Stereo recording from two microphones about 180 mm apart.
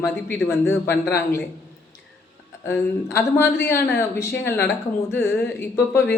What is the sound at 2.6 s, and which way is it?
Speech, 15° left (ahead or behind).